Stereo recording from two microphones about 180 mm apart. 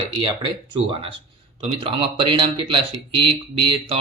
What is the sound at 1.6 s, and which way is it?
Speech, 30° right (ahead or behind).